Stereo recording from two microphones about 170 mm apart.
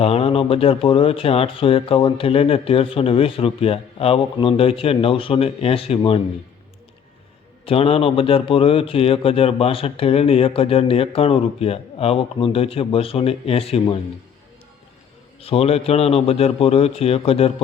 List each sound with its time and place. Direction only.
0.0 s a man's voice: 35° left (ahead or behind)
7.6 s a man's voice: 35° left (ahead or behind)
15.4 s a man's voice: 35° left (ahead or behind)